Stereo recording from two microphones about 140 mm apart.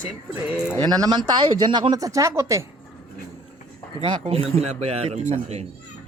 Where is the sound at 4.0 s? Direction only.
45° right (ahead or behind).